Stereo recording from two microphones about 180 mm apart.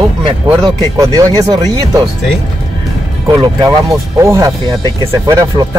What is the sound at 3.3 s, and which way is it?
Speech, 20° right (ahead or behind).